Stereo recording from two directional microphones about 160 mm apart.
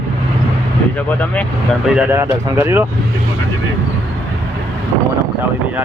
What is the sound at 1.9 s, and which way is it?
Speech, 15° right (ahead or behind).